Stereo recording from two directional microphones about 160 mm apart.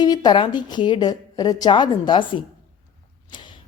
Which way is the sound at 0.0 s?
25° left (ahead or behind).